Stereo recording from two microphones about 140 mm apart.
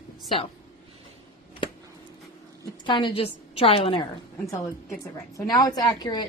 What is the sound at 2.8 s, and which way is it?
A woman's voice, 35° left (ahead or behind).